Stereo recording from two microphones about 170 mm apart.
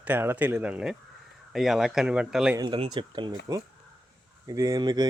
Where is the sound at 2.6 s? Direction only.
25° right (ahead or behind).